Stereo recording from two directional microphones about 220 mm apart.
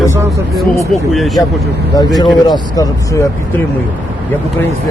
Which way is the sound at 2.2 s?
15° left (ahead or behind).